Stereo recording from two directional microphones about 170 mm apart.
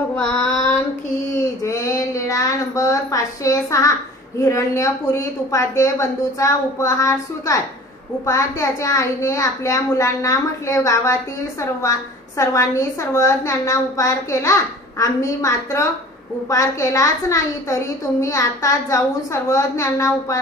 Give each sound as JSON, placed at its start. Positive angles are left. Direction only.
{"t": 0.1, "sound": "child singing", "side_deg": 10}
{"t": 1.6, "sound": "a sound", "side_deg": 20}
{"t": 4.4, "sound": "a woman's voice", "side_deg": 20}